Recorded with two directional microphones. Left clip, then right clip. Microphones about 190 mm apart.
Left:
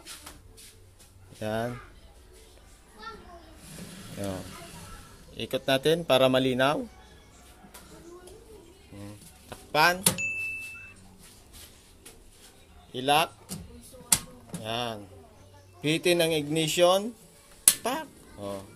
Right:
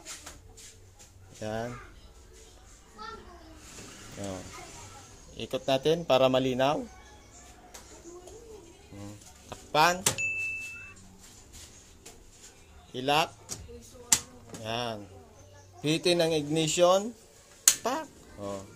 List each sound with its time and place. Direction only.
1.4 s speech: 15° left (ahead or behind)
5.3 s speech: 10° left (ahead or behind)
8.9 s a sound: centre (ahead or behind)
12.9 s speech: 5° left (ahead or behind)
14.6 s speech: 5° left (ahead or behind)